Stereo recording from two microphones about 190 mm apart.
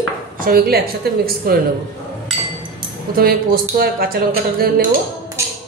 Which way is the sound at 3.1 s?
50° right (ahead or behind).